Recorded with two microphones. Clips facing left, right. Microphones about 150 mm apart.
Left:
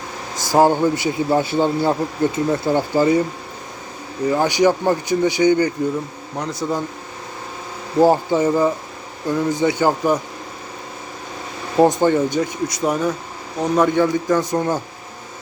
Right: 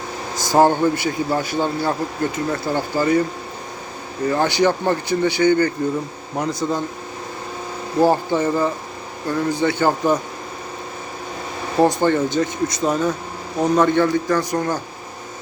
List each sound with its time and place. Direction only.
0.3 s a man's voice: 5° left (ahead or behind)
4.3 s a man's voice: 10° left (ahead or behind)
6.3 s speech: centre (ahead or behind)
7.9 s a man's voice: 15° left (ahead or behind)
11.8 s a man's voice: 15° left (ahead or behind)